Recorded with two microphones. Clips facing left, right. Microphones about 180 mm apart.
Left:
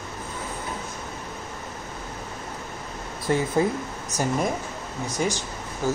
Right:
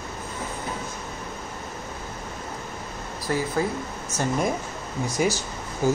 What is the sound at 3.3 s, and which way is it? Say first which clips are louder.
Speech: left 3 dB; 20° left (ahead or behind).